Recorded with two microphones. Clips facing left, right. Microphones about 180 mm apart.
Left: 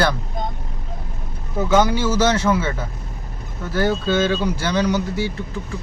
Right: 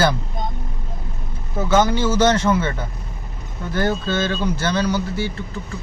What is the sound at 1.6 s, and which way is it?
Speech, 10° left (ahead or behind).